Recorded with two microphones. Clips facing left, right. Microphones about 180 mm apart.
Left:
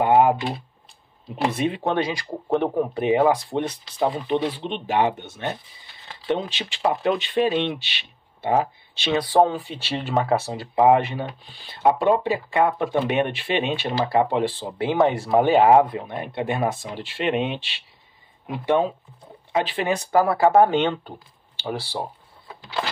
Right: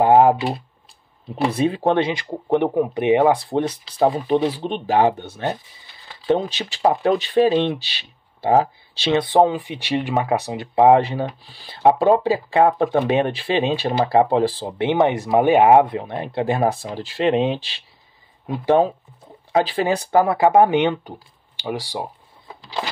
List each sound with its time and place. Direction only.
0.0 s computer keyboard: 35° right (ahead or behind)
1.5 s speech: 35° right (ahead or behind)
2.6 s speech: 15° right (ahead or behind)
4.3 s speech: 40° right (ahead or behind); by 10.7 s 15° right (ahead or behind)
10.7 s speech: 30° right (ahead or behind)
14.8 s speech: 20° right (ahead or behind)
19.5 s speech: 35° right (ahead or behind); by 22.1 s 15° right (ahead or behind)